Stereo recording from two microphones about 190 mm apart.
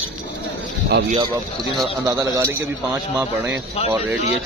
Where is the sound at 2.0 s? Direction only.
15° right (ahead or behind).